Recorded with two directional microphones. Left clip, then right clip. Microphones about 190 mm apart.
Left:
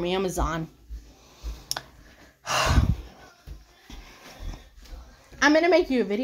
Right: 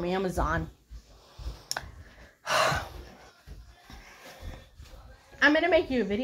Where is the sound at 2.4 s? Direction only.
Centre (ahead or behind).